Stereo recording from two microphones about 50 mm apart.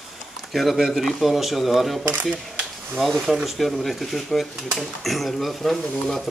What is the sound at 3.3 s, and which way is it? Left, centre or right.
Speech, centre.